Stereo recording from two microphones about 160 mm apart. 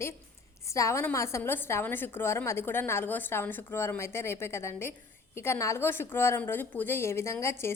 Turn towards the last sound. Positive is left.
turn(degrees=15)  # may be behind; listen again after turning